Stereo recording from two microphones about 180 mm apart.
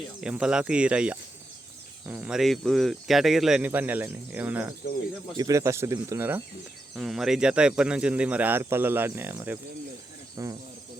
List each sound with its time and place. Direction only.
0.2 s speech: 5° right (ahead or behind)
6.9 s speech: centre (ahead or behind); by 10.6 s 20° right (ahead or behind)